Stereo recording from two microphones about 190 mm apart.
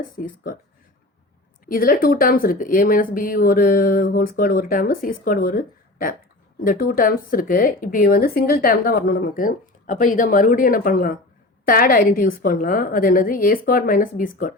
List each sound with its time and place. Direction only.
1.6 s speech: 50° left (ahead or behind)